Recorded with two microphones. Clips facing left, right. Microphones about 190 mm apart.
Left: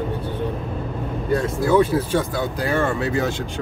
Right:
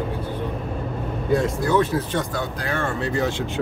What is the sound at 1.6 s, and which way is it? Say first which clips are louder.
Speech: left 3 dB; 10° left (ahead or behind).